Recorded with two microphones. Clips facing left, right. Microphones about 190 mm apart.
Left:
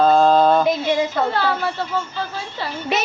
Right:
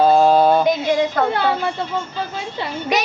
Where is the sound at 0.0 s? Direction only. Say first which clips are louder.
Right 1 dB; 10° right (ahead or behind).